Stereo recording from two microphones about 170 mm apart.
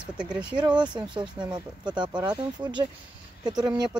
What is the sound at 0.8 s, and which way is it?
Speech, 25° right (ahead or behind).